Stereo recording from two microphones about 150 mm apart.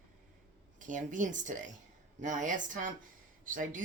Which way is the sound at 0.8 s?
60° right (ahead or behind).